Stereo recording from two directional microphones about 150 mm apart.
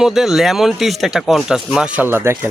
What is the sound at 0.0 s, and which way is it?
A man's voice, centre (ahead or behind).